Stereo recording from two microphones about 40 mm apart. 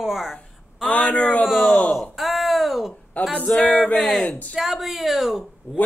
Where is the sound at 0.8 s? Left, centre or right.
Left.